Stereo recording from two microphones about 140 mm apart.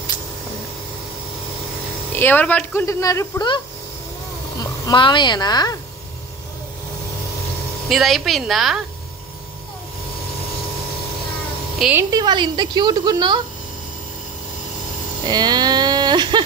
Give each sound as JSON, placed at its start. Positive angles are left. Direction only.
{"t": 2.1, "sound": "speech", "side_deg": 15}
{"t": 4.6, "sound": "speech", "side_deg": 30}
{"t": 7.9, "sound": "a woman's voice", "side_deg": 0}
{"t": 11.9, "sound": "a woman's voice", "side_deg": -20}
{"t": 15.2, "sound": "a sound", "side_deg": -30}